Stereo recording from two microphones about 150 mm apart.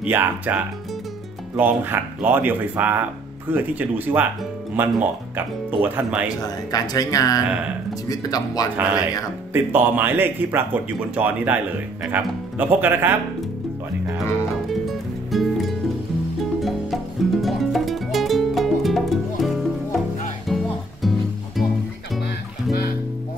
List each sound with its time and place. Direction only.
0.0 s speech: 10° right (ahead or behind)
6.2 s speech: 25° left (ahead or behind)
9.5 s speech: 15° right (ahead or behind)
14.5 s music: centre (ahead or behind)